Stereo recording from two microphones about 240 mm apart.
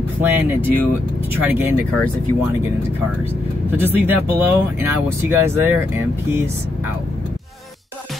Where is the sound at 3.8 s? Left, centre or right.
Centre.